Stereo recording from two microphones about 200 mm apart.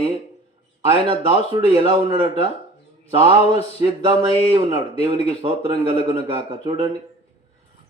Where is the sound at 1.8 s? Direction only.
25° right (ahead or behind).